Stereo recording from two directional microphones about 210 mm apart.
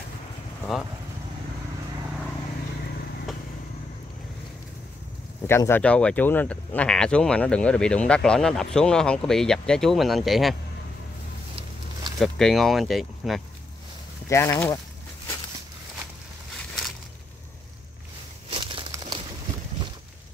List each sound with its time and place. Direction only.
5.5 s speech: 10° left (ahead or behind)
12.2 s speech: centre (ahead or behind)
14.3 s speech: 15° left (ahead or behind)
16.5 s crushing: 5° left (ahead or behind)
18.5 s crumpling: 25° right (ahead or behind)